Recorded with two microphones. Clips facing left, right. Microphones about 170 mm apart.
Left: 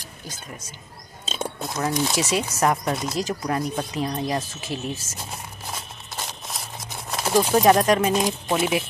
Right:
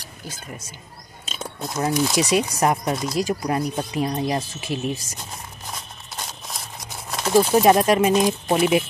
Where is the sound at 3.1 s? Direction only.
15° right (ahead or behind).